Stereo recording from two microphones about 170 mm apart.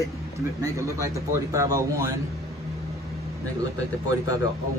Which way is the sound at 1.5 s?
20° right (ahead or behind).